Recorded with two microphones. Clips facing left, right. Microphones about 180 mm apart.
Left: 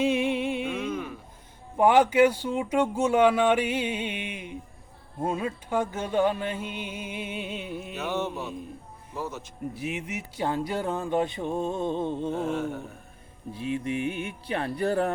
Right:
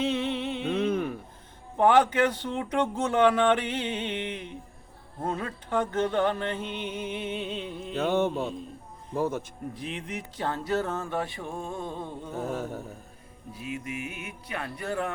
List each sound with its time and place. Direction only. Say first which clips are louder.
0.0 s music: left 3 dB; 10° left (ahead or behind)
0.9 s a sound: right 4 dB; 55° right (ahead or behind)
1.7 s speech: left 1 dB; 10° left (ahead or behind)
7.9 s mantra: right 6 dB; 55° right (ahead or behind)
9.7 s speech: left 3 dB; 10° left (ahead or behind)
12.4 s mantra: left 3 dB; 40° right (ahead or behind)
13.5 s speech: left 6 dB; 30° left (ahead or behind)